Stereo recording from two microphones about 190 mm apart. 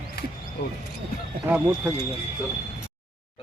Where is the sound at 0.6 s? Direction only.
60° left (ahead or behind).